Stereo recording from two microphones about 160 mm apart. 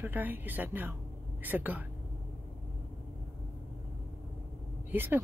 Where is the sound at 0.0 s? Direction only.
10° right (ahead or behind).